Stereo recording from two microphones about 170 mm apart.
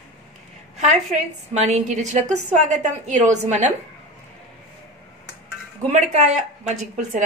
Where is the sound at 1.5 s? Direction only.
40° right (ahead or behind).